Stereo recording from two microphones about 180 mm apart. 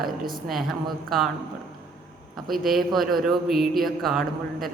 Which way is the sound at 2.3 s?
Centre (ahead or behind).